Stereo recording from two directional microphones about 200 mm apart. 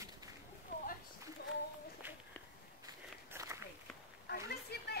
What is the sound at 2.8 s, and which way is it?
Walk, 15° right (ahead or behind).